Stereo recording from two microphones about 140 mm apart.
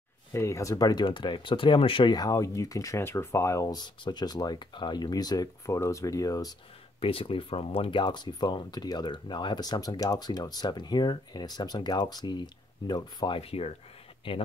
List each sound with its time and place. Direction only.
0.3 s speech: 20° left (ahead or behind)
7.0 s speech: 40° left (ahead or behind)
13.4 s speech: 45° left (ahead or behind)